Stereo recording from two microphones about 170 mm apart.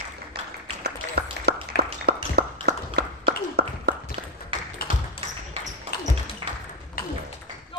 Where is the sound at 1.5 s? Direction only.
75° right (ahead or behind).